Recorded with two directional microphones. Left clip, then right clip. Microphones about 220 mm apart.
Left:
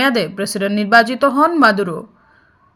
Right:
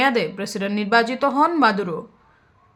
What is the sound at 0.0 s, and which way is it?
Speech, 15° left (ahead or behind).